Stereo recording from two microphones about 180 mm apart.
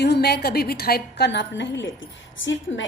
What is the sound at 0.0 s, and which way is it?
A woman's voice, 65° left (ahead or behind).